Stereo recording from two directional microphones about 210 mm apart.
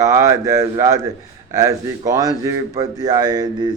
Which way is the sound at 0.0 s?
15° right (ahead or behind).